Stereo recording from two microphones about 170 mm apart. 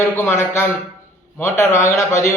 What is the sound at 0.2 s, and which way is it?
A man's voice, 15° left (ahead or behind).